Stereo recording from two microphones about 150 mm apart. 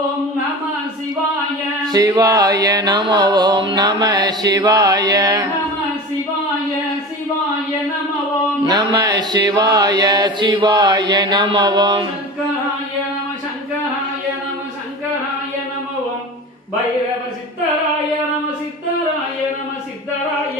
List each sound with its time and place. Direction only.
1.9 s music: 25° right (ahead or behind)
8.6 s music: 25° right (ahead or behind)